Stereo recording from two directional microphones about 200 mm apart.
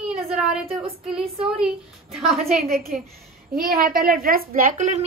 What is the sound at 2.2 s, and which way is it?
Speech, 30° right (ahead or behind).